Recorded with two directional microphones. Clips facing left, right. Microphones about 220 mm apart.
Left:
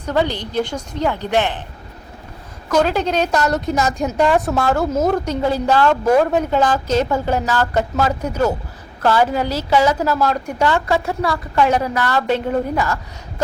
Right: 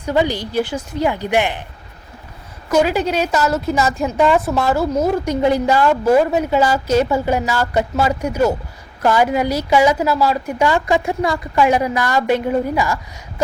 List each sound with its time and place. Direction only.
0.0 s a woman's voice: 10° right (ahead or behind)
2.6 s a woman's voice: 10° right (ahead or behind)
5.2 s a woman's voice: 15° right (ahead or behind)